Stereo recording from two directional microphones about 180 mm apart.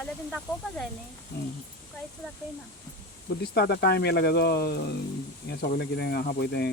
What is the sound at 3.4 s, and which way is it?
Speech, 65° left (ahead or behind).